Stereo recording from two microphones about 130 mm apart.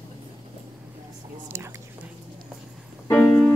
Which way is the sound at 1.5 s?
20° right (ahead or behind).